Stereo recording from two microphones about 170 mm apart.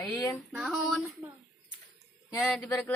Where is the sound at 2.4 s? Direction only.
5° left (ahead or behind).